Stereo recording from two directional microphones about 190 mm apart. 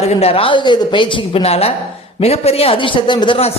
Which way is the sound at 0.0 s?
30° left (ahead or behind).